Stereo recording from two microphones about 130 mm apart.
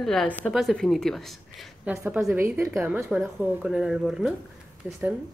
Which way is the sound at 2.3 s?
20° right (ahead or behind).